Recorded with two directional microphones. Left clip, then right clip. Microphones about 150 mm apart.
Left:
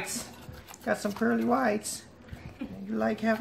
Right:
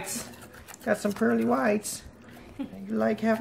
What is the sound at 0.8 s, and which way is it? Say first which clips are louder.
Speech: right 3 dB; 45° right (ahead or behind).